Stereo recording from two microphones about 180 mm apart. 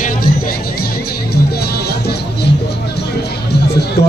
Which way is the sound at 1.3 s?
60° left (ahead or behind).